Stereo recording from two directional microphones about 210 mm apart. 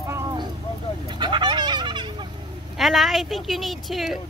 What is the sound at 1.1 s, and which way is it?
Fowl, 20° right (ahead or behind).